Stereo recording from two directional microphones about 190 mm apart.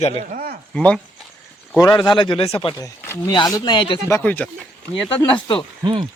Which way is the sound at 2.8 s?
15° left (ahead or behind).